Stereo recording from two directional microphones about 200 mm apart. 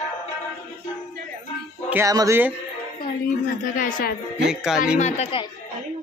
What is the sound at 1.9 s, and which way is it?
Speech, 15° right (ahead or behind).